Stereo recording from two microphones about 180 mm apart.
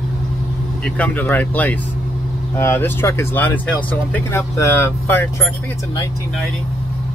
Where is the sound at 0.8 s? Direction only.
5° left (ahead or behind).